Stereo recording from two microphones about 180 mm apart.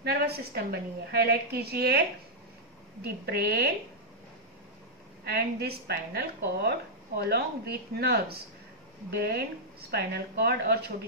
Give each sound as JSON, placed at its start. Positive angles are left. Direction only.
{"t": 0.0, "sound": "a woman's voice", "side_deg": -60}
{"t": 5.2, "sound": "a woman's voice", "side_deg": -60}